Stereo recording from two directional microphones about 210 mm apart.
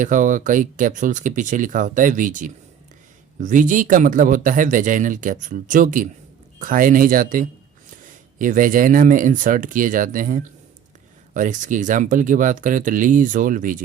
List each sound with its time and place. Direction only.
0.0 s speech: 35° right (ahead or behind)